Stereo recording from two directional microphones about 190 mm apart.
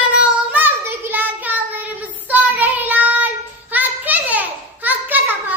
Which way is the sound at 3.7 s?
10° right (ahead or behind).